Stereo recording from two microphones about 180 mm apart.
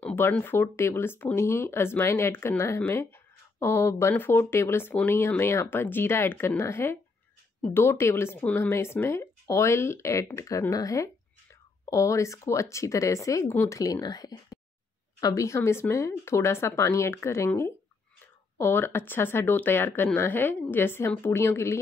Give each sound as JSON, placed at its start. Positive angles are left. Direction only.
{"t": 0.0, "sound": "speech", "side_deg": 10}